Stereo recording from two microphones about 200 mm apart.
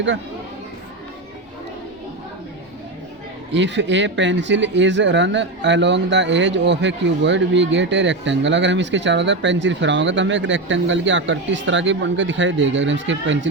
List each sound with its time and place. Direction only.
3.5 s speech: 65° right (ahead or behind)